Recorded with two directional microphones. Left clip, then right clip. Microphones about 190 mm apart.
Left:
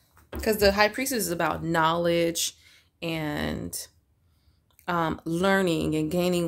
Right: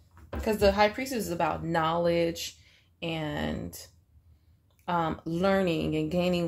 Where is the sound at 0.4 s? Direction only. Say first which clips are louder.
Left 2 dB; 45° left (ahead or behind).